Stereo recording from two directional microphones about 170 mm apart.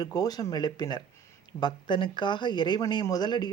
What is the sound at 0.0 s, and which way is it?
Speech, 20° left (ahead or behind).